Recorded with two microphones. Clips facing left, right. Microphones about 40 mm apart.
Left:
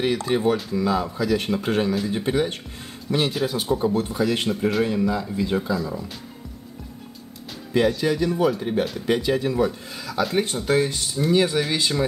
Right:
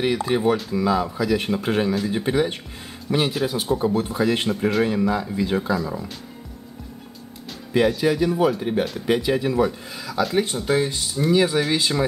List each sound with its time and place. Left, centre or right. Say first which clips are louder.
0.0 s speech: right 1 dB; centre
3.9 s speech: right 1 dB; centre
7.7 s speech: right 1 dB; centre